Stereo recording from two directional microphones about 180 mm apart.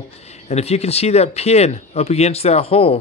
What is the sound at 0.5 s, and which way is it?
Speech, 35° left (ahead or behind).